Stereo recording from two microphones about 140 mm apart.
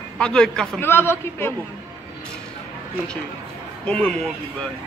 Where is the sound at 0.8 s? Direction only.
15° left (ahead or behind).